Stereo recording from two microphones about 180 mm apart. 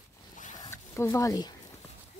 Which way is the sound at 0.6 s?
15° left (ahead or behind).